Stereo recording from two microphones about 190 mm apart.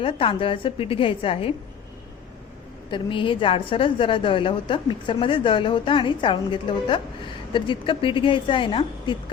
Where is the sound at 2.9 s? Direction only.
25° left (ahead or behind).